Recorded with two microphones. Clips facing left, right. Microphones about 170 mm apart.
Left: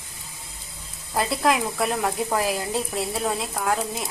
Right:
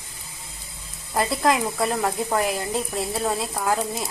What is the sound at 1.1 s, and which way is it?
Speech, centre (ahead or behind).